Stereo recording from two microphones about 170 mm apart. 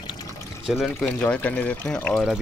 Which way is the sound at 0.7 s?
Centre (ahead or behind).